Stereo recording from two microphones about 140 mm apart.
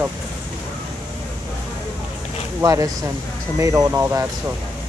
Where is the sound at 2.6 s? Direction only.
25° right (ahead or behind).